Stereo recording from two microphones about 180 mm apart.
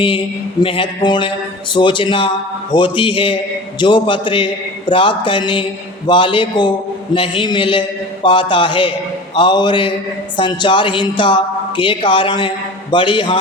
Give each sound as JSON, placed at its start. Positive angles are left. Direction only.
{"t": 0.6, "sound": "a man's voice", "side_deg": 30}